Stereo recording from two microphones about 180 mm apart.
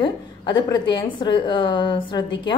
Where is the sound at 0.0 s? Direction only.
25° left (ahead or behind).